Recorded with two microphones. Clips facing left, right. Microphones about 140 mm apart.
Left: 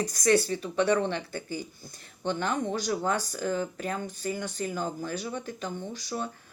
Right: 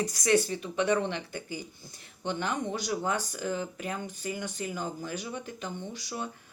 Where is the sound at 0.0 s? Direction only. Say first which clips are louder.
Even; 45° left (ahead or behind).